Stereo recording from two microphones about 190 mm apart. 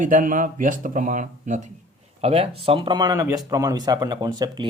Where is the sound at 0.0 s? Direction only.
45° right (ahead or behind).